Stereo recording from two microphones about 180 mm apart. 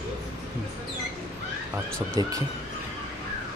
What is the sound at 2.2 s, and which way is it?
Speech, 20° right (ahead or behind).